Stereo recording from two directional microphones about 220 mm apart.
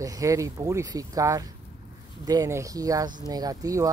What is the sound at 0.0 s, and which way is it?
Speech, 15° right (ahead or behind).